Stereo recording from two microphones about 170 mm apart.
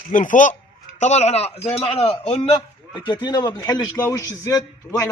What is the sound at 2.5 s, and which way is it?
A man's voice, 30° left (ahead or behind).